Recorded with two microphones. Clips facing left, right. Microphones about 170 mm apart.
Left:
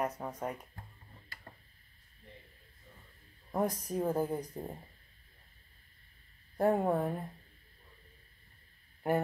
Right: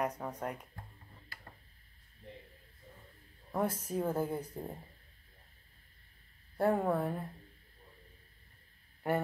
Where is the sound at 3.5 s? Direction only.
10° left (ahead or behind).